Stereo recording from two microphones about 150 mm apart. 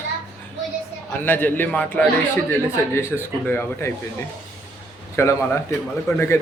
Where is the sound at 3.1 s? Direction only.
Centre (ahead or behind).